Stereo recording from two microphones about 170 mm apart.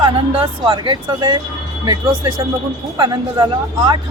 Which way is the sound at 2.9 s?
25° right (ahead or behind).